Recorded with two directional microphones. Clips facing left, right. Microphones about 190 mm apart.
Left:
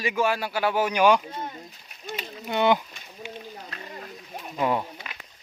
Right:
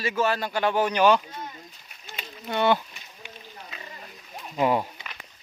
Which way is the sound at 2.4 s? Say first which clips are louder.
Left 1 dB; 15° left (ahead or behind).